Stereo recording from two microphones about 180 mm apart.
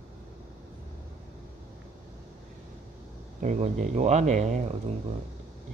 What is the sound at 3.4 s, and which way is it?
Speech, 40° right (ahead or behind).